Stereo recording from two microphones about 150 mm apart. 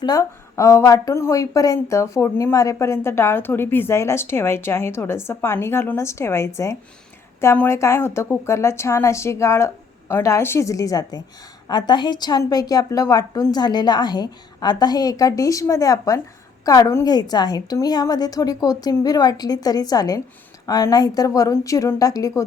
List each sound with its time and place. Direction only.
0.0 s a woman's voice: 25° left (ahead or behind)